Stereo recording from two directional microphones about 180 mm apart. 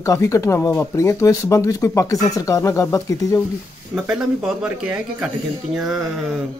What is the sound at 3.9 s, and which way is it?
Speech, 5° right (ahead or behind).